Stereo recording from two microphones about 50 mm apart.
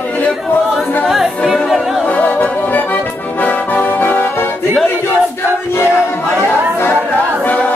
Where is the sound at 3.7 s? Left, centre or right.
Left.